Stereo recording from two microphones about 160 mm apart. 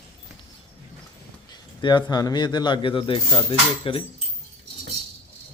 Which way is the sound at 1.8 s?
30° left (ahead or behind).